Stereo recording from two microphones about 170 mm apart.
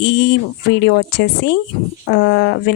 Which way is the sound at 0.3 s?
90° left.